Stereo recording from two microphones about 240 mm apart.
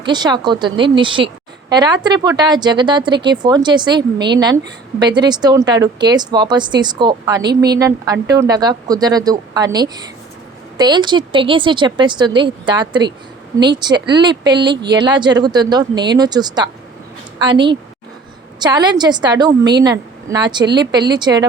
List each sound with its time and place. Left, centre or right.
0.0 s a woman's voice: centre